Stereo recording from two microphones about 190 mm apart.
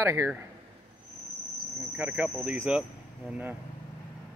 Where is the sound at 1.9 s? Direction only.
5° right (ahead or behind).